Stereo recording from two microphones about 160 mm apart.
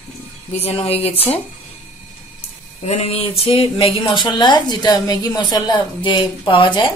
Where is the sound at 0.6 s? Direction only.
40° left (ahead or behind).